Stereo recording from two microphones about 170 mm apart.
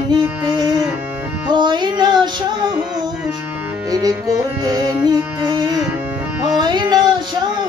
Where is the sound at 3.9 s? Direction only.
20° right (ahead or behind).